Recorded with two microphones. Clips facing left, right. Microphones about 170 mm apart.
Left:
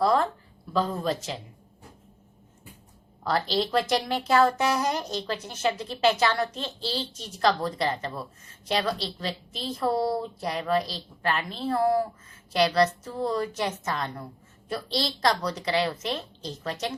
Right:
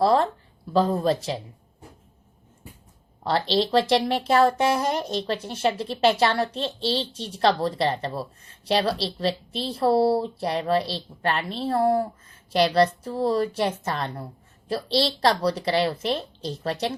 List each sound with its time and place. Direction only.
0.0 s speech: 30° right (ahead or behind)
3.2 s speech: 30° right (ahead or behind)